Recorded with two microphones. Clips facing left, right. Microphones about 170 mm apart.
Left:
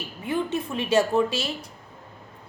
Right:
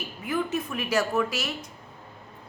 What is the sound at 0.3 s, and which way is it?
A woman's voice, 30° left (ahead or behind).